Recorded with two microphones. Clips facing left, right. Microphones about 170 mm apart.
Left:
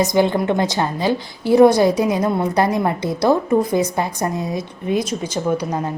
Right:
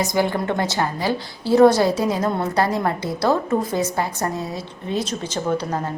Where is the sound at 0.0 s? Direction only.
20° left (ahead or behind).